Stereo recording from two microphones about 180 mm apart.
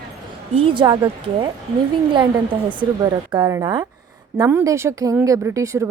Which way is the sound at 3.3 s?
20° right (ahead or behind).